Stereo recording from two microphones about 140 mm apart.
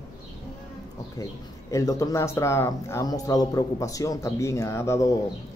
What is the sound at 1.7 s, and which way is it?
Speech, 25° left (ahead or behind).